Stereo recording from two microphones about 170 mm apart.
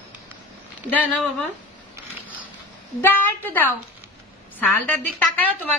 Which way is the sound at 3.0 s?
10° left (ahead or behind).